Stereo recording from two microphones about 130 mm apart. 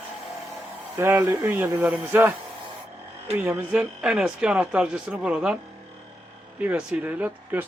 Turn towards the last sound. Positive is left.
turn(degrees=-15)  # may be behind; listen again after turning